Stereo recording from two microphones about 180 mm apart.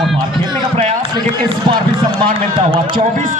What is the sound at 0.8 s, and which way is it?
Speech, 30° right (ahead or behind).